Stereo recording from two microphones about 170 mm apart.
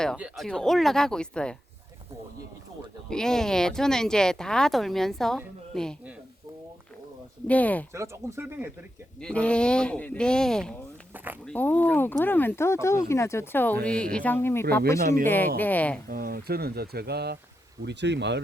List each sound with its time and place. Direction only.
0.2 s speech: centre (ahead or behind)
3.1 s speech: 5° left (ahead or behind)
7.4 s speech: 10° left (ahead or behind)
7.9 s speech: 15° right (ahead or behind)
9.2 s speech: 5° left (ahead or behind)
16.0 s speech: 60° right (ahead or behind)
17.8 s speech: 90° right